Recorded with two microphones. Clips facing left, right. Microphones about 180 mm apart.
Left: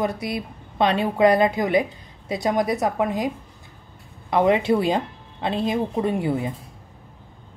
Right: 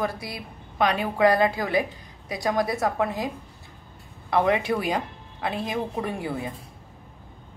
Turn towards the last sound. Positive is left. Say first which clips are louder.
# left 7 dB
turn(degrees=20)  # may be behind; listen again after turning